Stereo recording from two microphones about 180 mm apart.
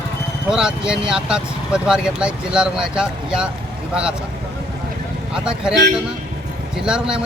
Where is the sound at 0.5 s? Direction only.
5° right (ahead or behind).